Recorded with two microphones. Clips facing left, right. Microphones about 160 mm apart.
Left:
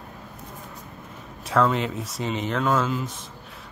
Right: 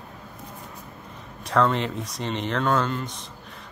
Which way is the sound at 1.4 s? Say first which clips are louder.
Even; 5° left (ahead or behind).